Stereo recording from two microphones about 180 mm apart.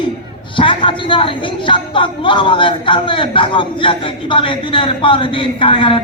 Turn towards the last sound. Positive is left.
turn(degrees=30)  # may be behind; listen again after turning